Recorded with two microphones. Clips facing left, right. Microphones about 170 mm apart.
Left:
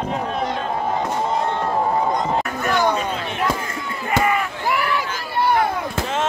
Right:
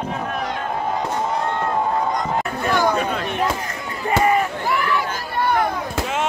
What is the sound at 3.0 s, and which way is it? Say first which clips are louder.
Chop: right 2 dB; 50° right (ahead or behind).